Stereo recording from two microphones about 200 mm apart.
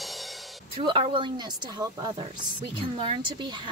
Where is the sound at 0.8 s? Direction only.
25° right (ahead or behind).